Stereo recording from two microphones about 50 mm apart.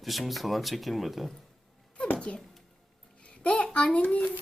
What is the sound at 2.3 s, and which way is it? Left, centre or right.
A child's voice, left.